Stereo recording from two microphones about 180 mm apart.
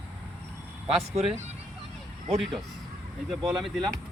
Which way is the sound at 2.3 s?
Centre (ahead or behind).